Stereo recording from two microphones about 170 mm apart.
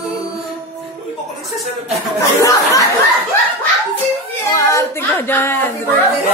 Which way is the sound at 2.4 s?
20° left (ahead or behind).